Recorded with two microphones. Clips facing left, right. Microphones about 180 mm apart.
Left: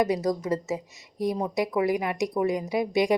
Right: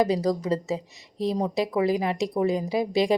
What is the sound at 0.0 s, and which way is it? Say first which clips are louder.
A woman's voice: right 2 dB; 30° right (ahead or behind).